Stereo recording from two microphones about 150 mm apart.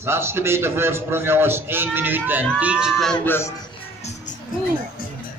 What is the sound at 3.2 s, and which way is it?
Speech, 15° left (ahead or behind).